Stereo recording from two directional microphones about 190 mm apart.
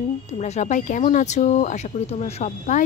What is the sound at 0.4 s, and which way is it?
Speech, 40° left (ahead or behind).